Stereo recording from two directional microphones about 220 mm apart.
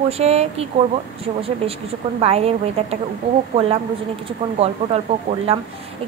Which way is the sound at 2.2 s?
25° right (ahead or behind).